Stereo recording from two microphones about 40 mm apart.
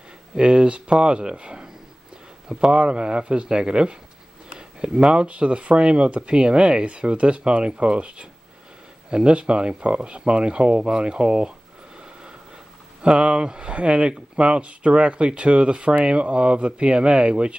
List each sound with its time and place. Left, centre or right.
0.4 s speech: right
12.0 s a sound: right
13.2 s speech: right